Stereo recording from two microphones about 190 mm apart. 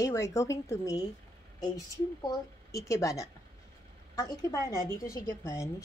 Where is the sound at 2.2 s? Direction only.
20° left (ahead or behind).